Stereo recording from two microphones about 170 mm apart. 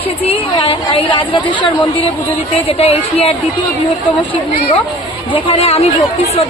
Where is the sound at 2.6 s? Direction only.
35° left (ahead or behind).